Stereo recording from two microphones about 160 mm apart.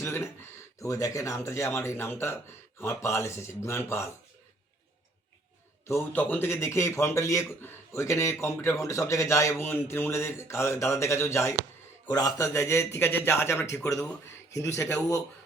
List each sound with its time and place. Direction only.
0.0 s speech: 15° left (ahead or behind)
5.8 s speech: 15° left (ahead or behind)